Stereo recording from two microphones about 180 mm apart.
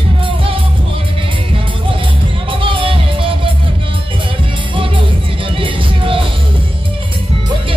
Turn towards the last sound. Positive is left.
turn(degrees=-30)  # may be behind; listen again after turning